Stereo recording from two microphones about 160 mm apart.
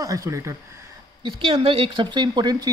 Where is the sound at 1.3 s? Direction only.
30° right (ahead or behind).